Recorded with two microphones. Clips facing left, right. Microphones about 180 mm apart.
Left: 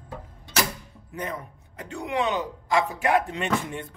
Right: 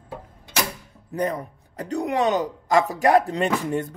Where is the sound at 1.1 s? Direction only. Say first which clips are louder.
Right 8 dB; 40° right (ahead or behind).